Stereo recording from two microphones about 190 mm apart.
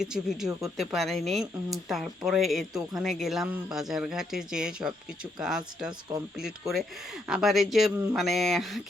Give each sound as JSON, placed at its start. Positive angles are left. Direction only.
{"t": 0.0, "sound": "a woman's voice", "side_deg": -5}